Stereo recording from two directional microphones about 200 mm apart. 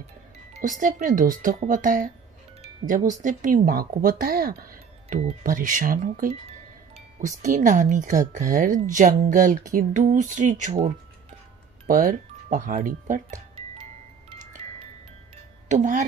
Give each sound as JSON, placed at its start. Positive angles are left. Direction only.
{"t": 0.6, "sound": "speech", "side_deg": -40}
{"t": 11.9, "sound": "speech", "side_deg": -40}
{"t": 15.7, "sound": "speech", "side_deg": -40}